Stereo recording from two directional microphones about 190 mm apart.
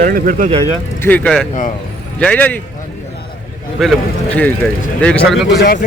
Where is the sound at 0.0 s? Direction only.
45° right (ahead or behind).